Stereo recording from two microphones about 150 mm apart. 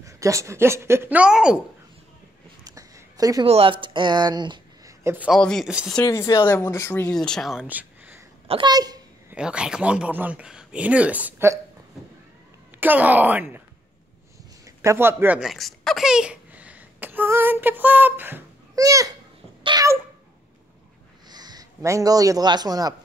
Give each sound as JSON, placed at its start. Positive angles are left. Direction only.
{"t": 0.0, "sound": "speech", "side_deg": -20}
{"t": 2.6, "sound": "a sound", "side_deg": -25}
{"t": 3.4, "sound": "speech", "side_deg": -40}
{"t": 5.0, "sound": "a man's voice", "side_deg": -10}
{"t": 5.3, "sound": "speech", "side_deg": 0}
{"t": 6.0, "sound": "speech", "side_deg": 20}
{"t": 7.1, "sound": "speech", "side_deg": 5}
{"t": 8.5, "sound": "a child's voice", "side_deg": -30}
{"t": 9.3, "sound": "speech", "side_deg": -5}
{"t": 12.8, "sound": "speech", "side_deg": -10}
{"t": 14.8, "sound": "speech", "side_deg": -15}
{"t": 18.8, "sound": "babbling", "side_deg": -20}
{"t": 19.6, "sound": "cat", "side_deg": -30}
{"t": 21.3, "sound": "a man's voice", "side_deg": -25}